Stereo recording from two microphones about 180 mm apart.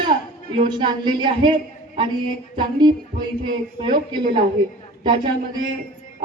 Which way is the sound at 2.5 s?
25° right (ahead or behind).